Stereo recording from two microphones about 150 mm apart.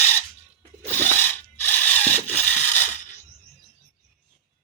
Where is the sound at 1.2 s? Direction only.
15° left (ahead or behind).